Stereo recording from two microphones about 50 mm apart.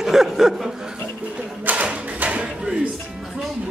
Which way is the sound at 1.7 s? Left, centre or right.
Right.